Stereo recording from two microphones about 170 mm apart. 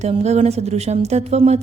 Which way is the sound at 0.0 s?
40° right (ahead or behind).